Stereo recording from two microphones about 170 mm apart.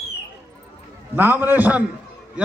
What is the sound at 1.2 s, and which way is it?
Speech, 10° right (ahead or behind).